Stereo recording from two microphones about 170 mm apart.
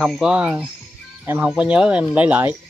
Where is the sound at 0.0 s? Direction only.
5° right (ahead or behind).